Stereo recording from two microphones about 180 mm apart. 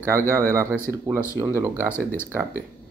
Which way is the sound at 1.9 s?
15° left (ahead or behind).